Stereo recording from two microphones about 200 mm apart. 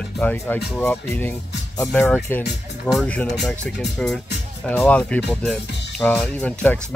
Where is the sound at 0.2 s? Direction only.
10° left (ahead or behind).